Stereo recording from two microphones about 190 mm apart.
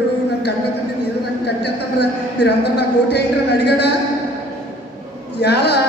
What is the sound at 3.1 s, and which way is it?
Speech, 60° left (ahead or behind).